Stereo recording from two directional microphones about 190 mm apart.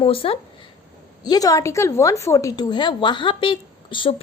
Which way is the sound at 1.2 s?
20° left (ahead or behind).